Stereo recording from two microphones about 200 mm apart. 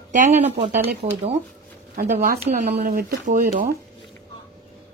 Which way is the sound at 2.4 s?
40° right (ahead or behind).